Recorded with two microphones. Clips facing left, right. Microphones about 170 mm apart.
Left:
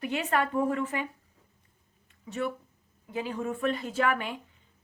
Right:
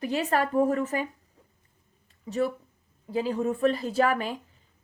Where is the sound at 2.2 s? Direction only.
35° right (ahead or behind).